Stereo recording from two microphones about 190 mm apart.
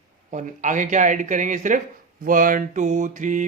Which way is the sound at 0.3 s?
40° right (ahead or behind).